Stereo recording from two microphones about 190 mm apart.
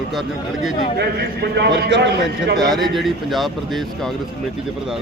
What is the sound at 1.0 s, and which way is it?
A man's voice, 60° right (ahead or behind).